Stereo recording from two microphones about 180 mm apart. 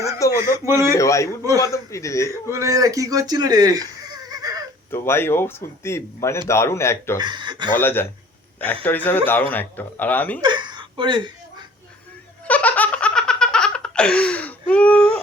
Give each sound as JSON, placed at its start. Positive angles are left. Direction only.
{"t": 0.2, "sound": "a sound", "side_deg": 15}
{"t": 0.6, "sound": "a man's voice", "side_deg": -15}
{"t": 0.9, "sound": "speech", "side_deg": 15}
{"t": 2.5, "sound": "speech", "side_deg": -15}
{"t": 4.3, "sound": "a sound", "side_deg": -20}
{"t": 4.9, "sound": "speech", "side_deg": 15}
{"t": 7.2, "sound": "speech", "side_deg": -25}
{"t": 7.7, "sound": "speech", "side_deg": 10}
{"t": 10.4, "sound": "a sound", "side_deg": -25}
{"t": 12.5, "sound": "laughter", "side_deg": 10}